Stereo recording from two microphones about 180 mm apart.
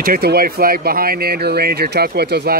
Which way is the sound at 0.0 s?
55° right (ahead or behind).